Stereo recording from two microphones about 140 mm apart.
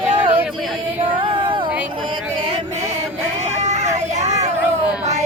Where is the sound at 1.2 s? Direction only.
35° right (ahead or behind).